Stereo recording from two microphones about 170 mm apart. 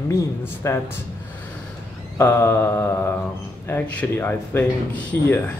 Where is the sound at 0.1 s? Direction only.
15° left (ahead or behind).